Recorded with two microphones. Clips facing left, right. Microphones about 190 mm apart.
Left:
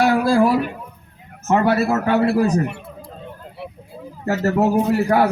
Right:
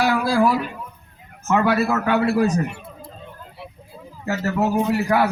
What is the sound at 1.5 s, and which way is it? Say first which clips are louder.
Speech: left 2 dB; 35° left (ahead or behind).